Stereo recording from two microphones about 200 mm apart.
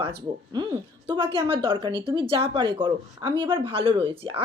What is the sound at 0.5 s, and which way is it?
Speech, 20° right (ahead or behind).